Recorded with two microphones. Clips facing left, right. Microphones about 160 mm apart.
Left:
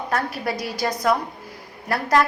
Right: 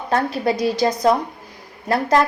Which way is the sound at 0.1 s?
25° right (ahead or behind).